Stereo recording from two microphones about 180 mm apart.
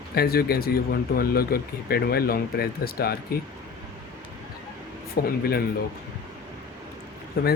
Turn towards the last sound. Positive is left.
turn(degrees=65)  # may be behind; listen again after turning